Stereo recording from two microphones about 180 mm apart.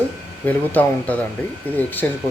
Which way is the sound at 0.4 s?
10° left (ahead or behind).